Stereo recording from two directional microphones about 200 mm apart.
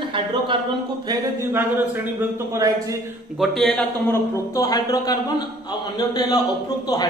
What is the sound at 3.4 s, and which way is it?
A man's voice, centre (ahead or behind).